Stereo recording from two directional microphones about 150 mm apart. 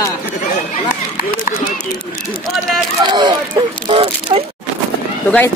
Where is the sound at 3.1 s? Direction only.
30° right (ahead or behind).